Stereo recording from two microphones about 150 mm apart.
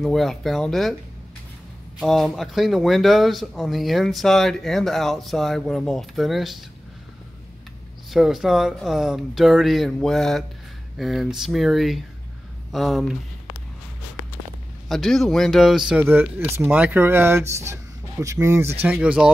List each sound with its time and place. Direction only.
0.0 s speech: centre (ahead or behind)
2.0 s speech: centre (ahead or behind)
8.1 s speech: centre (ahead or behind)
14.9 s speech: centre (ahead or behind)